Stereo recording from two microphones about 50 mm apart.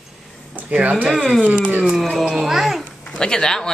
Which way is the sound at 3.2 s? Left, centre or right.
Centre.